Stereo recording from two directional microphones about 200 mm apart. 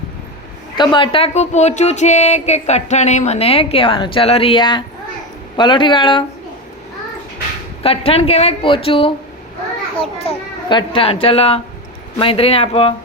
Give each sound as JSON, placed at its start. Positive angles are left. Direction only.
{"t": 0.8, "sound": "speech", "side_deg": 25}
{"t": 7.8, "sound": "a child's voice", "side_deg": 30}